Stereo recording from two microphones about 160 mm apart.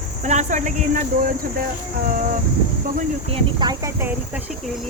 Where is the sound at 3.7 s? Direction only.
20° right (ahead or behind).